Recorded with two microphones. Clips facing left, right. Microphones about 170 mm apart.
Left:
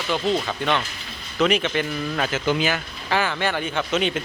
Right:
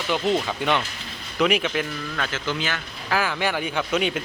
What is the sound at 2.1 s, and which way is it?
Speech, 15° left (ahead or behind).